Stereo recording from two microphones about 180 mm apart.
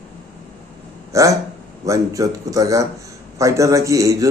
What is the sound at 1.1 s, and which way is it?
A man's voice, 15° right (ahead or behind).